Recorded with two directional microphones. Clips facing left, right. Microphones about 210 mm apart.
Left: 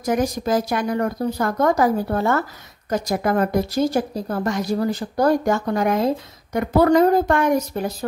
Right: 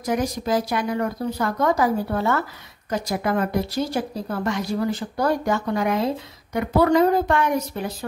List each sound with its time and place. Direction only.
0.0 s speech: 45° left (ahead or behind)